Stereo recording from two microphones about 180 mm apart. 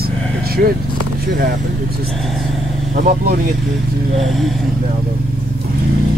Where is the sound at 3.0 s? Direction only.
50° right (ahead or behind).